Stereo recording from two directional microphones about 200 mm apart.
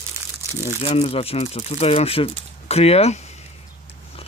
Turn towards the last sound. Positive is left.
turn(degrees=30)  # may be behind; listen again after turning